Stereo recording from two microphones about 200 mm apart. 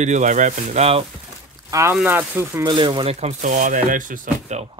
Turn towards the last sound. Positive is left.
turn(degrees=-40)  # may be behind; listen again after turning